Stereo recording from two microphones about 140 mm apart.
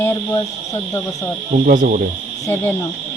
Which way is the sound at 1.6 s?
70° right (ahead or behind).